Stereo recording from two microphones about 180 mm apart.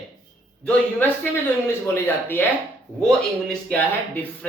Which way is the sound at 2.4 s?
10° left (ahead or behind).